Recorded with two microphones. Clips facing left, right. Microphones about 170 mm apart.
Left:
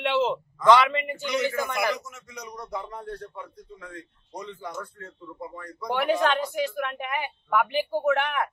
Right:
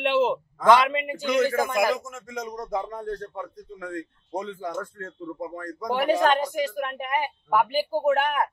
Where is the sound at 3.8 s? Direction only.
90° right.